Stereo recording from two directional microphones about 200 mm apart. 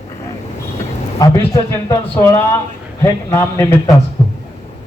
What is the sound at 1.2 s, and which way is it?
Speech, 15° left (ahead or behind).